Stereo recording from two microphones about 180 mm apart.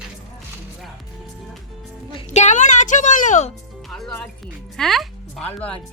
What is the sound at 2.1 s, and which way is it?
Music, 40° left (ahead or behind).